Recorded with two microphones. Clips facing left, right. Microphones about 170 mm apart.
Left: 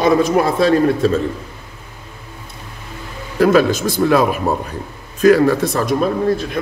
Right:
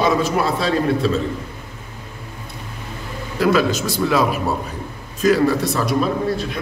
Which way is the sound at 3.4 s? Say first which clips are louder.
Left 4 dB; 50° left (ahead or behind).